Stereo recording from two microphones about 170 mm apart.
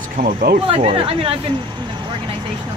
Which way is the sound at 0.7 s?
35° right (ahead or behind).